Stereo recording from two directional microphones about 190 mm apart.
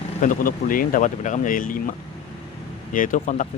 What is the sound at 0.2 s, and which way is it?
Speech, 45° left (ahead or behind).